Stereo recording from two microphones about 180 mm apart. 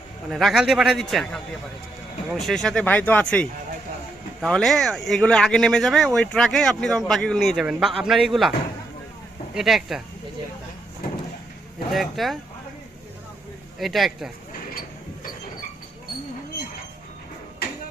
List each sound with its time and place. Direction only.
0.3 s speech: centre (ahead or behind)
9.6 s speech: centre (ahead or behind)
11.9 s speech: centre (ahead or behind)
13.7 s speech: centre (ahead or behind)